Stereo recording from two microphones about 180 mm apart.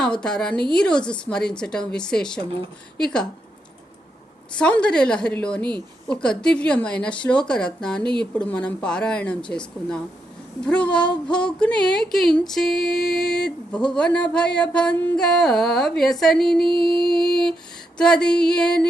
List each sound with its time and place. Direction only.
0.0 s speech: 5° left (ahead or behind)
4.5 s speech: 5° left (ahead or behind)
16.6 s music: 30° right (ahead or behind)
17.1 s speech: 5° left (ahead or behind)